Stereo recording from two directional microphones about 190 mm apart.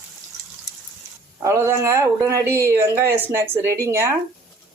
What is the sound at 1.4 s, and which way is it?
Speech, 15° right (ahead or behind).